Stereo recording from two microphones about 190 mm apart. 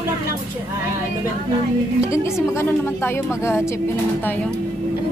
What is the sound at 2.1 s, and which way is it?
Speech, 15° left (ahead or behind).